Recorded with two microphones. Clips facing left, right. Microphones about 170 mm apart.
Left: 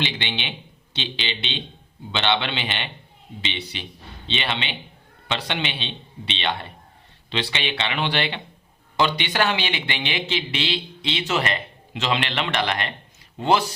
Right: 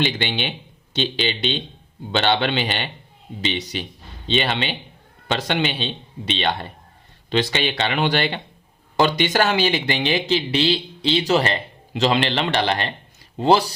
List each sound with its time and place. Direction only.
0.0 s speech: 45° right (ahead or behind)